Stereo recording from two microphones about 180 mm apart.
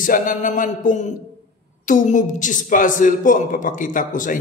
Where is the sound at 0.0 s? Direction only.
50° left (ahead or behind).